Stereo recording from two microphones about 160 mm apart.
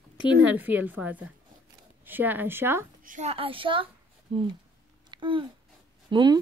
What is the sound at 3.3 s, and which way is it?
A child's voice, 35° right (ahead or behind).